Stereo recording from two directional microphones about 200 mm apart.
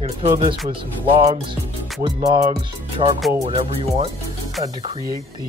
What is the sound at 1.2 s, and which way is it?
Speech, 30° right (ahead or behind).